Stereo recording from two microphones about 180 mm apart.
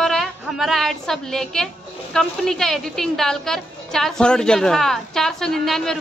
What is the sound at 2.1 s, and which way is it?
A woman's voice, centre (ahead or behind).